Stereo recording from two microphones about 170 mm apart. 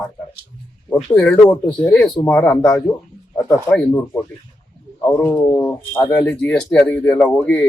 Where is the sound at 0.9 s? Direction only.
5° left (ahead or behind).